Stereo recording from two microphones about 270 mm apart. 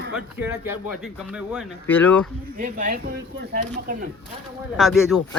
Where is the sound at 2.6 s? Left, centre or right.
Right.